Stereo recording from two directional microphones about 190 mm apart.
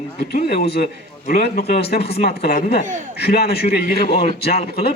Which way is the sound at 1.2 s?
55° left (ahead or behind).